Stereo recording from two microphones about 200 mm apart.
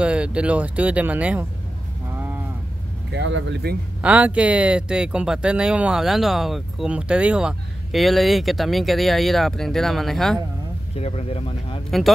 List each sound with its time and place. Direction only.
0.0 s speech: 5° right (ahead or behind)
2.1 s a sound: 10° right (ahead or behind)
3.1 s speech: 65° right (ahead or behind)
4.0 s speech: 5° right (ahead or behind)
11.0 s speech: 30° left (ahead or behind)